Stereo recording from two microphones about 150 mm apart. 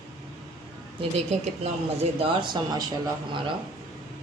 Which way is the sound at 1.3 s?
45° right (ahead or behind).